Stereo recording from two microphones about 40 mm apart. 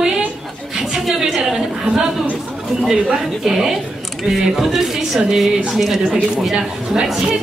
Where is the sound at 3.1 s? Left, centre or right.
Centre.